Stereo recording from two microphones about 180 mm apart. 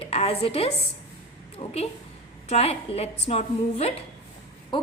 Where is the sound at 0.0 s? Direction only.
35° left (ahead or behind).